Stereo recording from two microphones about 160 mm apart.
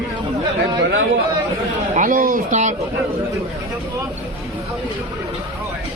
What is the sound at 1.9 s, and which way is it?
Speech, 55° right (ahead or behind).